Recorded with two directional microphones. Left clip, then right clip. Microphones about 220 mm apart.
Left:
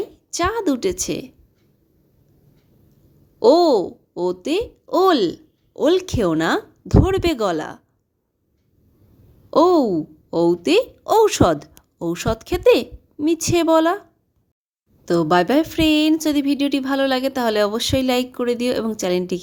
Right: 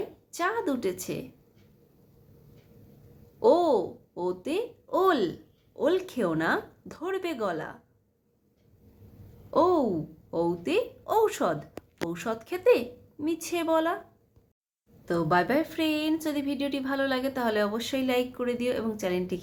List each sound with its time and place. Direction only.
0.3 s speech: 40° left (ahead or behind)
3.4 s speech: 40° left (ahead or behind)
9.5 s a woman's voice: 40° left (ahead or behind)
15.0 s a woman's voice: 45° left (ahead or behind)